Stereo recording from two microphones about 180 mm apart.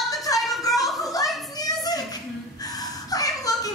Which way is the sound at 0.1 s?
20° left (ahead or behind).